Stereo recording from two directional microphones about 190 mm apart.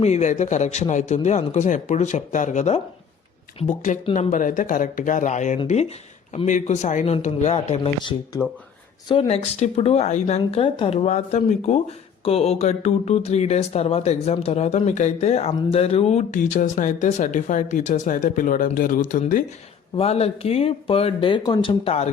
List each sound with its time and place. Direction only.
0.0 s speech: 35° left (ahead or behind)
20.0 s speech: 35° left (ahead or behind)